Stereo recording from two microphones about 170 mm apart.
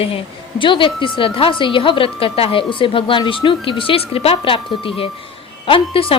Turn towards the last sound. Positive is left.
turn(degrees=30)  # may be behind; listen again after turning